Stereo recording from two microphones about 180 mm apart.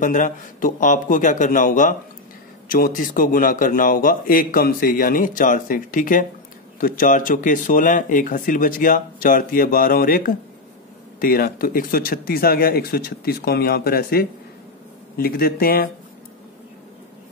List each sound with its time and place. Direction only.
0.0 s a man's voice: 45° left (ahead or behind)